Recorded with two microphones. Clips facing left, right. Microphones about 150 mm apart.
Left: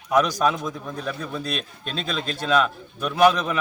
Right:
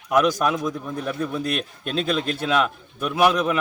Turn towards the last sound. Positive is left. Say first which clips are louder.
# left 1 dB
turn(degrees=-5)  # may be behind; listen again after turning